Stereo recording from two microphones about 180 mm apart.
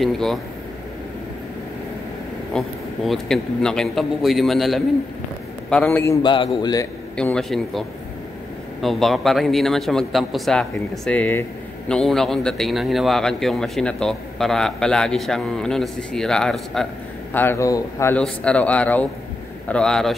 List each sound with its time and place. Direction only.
0.0 s a man's voice: centre (ahead or behind)
2.5 s a man's voice: centre (ahead or behind)
6.2 s speech: 25° left (ahead or behind)
7.2 s a man's voice: 5° left (ahead or behind)
8.8 s a man's voice: centre (ahead or behind)